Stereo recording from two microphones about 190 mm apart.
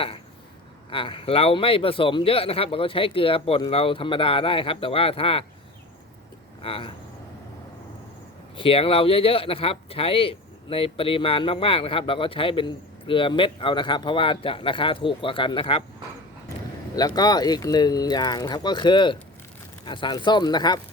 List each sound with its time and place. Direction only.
0.9 s speech: 25° left (ahead or behind)
6.6 s speech: 30° left (ahead or behind)
8.5 s speech: 30° left (ahead or behind)
16.9 s speech: 20° left (ahead or behind)